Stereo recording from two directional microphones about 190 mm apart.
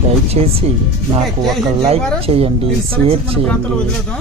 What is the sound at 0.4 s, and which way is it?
Speech, 35° right (ahead or behind).